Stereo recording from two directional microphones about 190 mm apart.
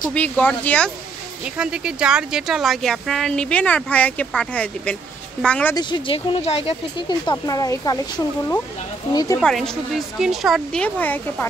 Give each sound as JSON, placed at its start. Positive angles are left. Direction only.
{"t": 0.0, "sound": "speech", "side_deg": 5}
{"t": 5.8, "sound": "speech", "side_deg": 25}
{"t": 9.1, "sound": "speech", "side_deg": 20}
{"t": 9.4, "sound": "speech", "side_deg": 0}